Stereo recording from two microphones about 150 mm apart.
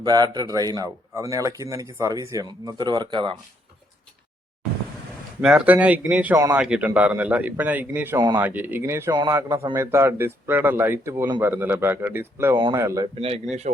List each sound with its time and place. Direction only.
0.0 s speech: 25° right (ahead or behind)
5.4 s a man's voice: 5° right (ahead or behind)
13.1 s speech: 40° right (ahead or behind)